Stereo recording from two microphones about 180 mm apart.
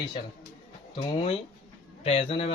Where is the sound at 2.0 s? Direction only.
35° left (ahead or behind).